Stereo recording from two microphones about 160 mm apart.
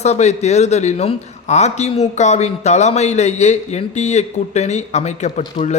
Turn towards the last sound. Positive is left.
turn(degrees=45)  # may be behind; listen again after turning